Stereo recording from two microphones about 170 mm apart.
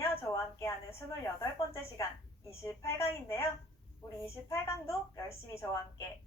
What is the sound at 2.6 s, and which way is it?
A woman's voice, 15° left (ahead or behind).